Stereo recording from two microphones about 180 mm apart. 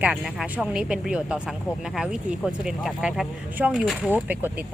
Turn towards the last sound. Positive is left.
turn(degrees=-10)  # may be behind; listen again after turning